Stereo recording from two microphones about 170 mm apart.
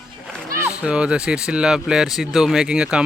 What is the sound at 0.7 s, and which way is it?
Speech, 5° right (ahead or behind).